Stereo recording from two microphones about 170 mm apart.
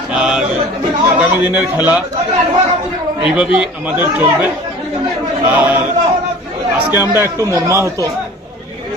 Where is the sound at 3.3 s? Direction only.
5° right (ahead or behind).